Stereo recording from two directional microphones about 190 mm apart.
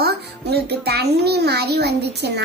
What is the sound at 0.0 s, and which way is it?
A child's voice, 55° right (ahead or behind).